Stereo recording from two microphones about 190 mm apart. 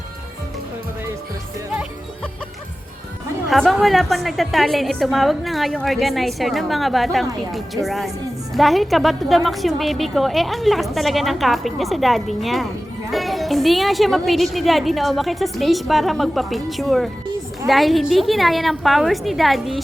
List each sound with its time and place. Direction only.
1.7 s music: 5° right (ahead or behind)
3.5 s a woman's voice: centre (ahead or behind)